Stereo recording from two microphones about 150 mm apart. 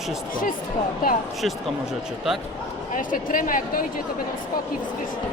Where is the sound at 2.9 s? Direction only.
65° left (ahead or behind).